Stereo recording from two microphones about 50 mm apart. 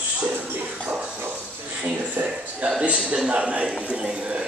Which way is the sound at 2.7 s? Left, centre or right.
Right.